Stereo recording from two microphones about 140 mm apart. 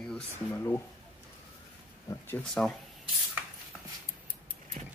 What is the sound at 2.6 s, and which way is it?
Speech, 10° left (ahead or behind).